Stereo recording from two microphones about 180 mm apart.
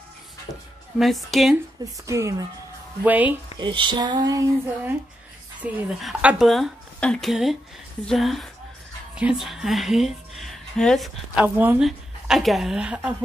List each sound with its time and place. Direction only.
0.9 s speech: centre (ahead or behind)
2.0 s speech: 15° right (ahead or behind)
3.5 s speech: 25° right (ahead or behind)
5.6 s a woman's voice: 5° right (ahead or behind)
11.4 s speech: 10° right (ahead or behind)